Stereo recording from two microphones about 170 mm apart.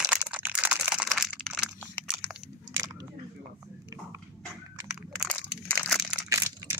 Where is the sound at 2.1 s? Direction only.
5° right (ahead or behind).